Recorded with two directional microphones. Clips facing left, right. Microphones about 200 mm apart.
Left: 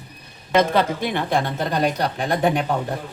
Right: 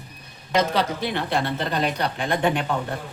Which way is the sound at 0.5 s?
50° left (ahead or behind).